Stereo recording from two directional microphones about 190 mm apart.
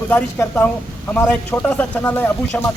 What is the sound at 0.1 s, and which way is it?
A man's voice, 10° left (ahead or behind).